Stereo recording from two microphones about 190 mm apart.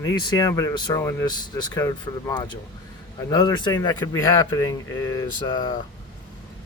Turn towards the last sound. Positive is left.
turn(degrees=25)  # may be behind; listen again after turning